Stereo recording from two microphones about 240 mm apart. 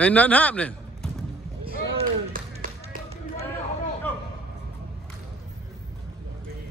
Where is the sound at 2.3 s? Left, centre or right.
Right.